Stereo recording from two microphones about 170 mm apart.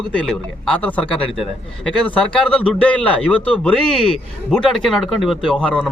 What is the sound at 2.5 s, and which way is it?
Speech, 5° left (ahead or behind).